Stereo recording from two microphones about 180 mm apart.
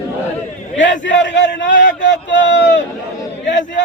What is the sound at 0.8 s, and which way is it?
A man's voice, 90° left.